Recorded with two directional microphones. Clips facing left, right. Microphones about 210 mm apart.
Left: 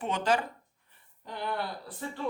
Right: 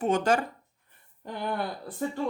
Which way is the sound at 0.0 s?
45° right (ahead or behind).